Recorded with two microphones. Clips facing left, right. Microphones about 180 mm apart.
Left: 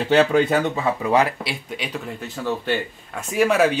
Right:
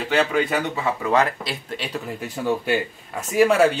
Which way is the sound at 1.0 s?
15° left (ahead or behind).